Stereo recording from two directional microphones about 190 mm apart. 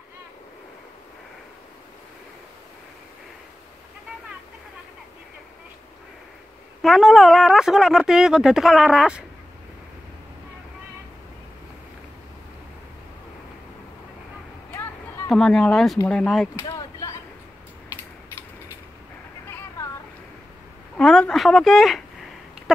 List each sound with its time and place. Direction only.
6.8 s speech: centre (ahead or behind)
15.2 s speech: centre (ahead or behind)
16.6 s a sound: 20° left (ahead or behind)
20.9 s speech: 5° left (ahead or behind)